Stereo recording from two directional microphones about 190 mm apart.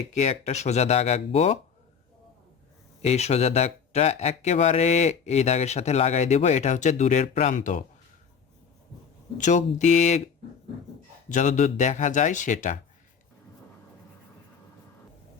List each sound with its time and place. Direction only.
0.1 s speech: 35° left (ahead or behind)
3.0 s speech: 35° left (ahead or behind)
9.4 s speech: 40° left (ahead or behind)
11.3 s speech: 40° left (ahead or behind)